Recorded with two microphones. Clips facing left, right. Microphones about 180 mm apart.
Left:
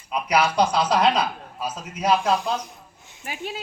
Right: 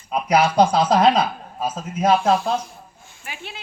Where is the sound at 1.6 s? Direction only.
50° right (ahead or behind).